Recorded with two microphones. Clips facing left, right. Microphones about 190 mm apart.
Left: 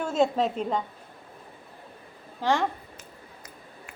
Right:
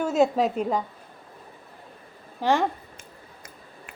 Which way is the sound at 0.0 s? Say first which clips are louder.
Right 3 dB; 5° right (ahead or behind).